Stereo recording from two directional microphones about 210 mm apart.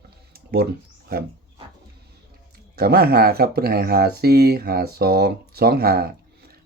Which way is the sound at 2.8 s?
45° right (ahead or behind).